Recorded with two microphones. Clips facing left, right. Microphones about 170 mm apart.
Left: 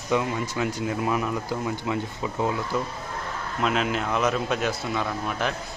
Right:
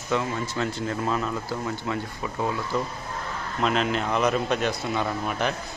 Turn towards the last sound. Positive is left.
turn(degrees=-5)  # may be behind; listen again after turning